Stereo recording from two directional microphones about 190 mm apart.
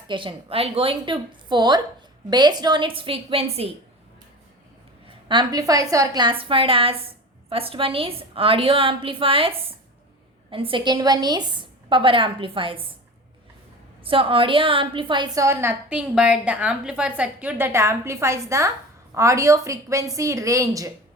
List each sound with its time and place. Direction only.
0.1 s a woman's voice: 25° right (ahead or behind)
5.3 s a woman's voice: 20° right (ahead or behind)
14.0 s a woman's voice: 30° right (ahead or behind)